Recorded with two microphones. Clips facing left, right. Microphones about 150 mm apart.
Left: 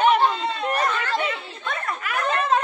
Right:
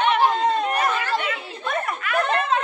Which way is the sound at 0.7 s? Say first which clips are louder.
Right 1 dB; 10° right (ahead or behind).